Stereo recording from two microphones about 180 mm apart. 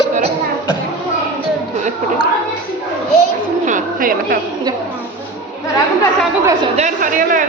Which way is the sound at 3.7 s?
50° right (ahead or behind).